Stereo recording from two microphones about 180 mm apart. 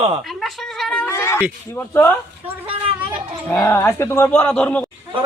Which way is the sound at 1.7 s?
10° left (ahead or behind).